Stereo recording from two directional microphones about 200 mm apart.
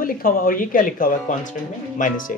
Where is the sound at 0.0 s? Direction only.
45° left (ahead or behind).